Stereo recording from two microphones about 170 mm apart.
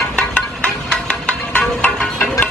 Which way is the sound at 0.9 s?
5° left (ahead or behind).